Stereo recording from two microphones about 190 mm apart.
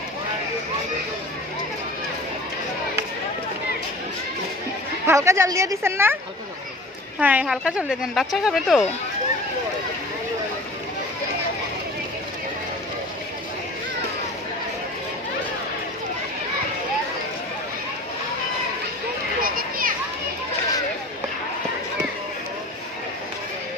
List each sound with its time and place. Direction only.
5.0 s a woman's voice: 15° right (ahead or behind)
7.2 s speech: 10° right (ahead or behind)
19.4 s children playing: 50° right (ahead or behind)